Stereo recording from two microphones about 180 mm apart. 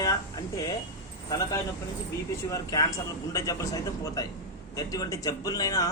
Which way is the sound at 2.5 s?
20° left (ahead or behind).